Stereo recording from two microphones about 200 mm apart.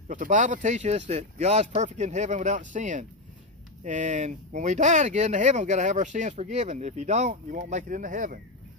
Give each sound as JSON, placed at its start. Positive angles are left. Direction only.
{"t": 0.1, "sound": "speech", "side_deg": -40}